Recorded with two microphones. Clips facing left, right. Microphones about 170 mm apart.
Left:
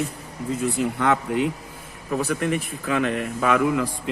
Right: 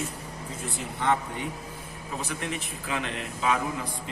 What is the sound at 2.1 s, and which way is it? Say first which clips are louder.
Speech: left 10 dB; 55° left (ahead or behind).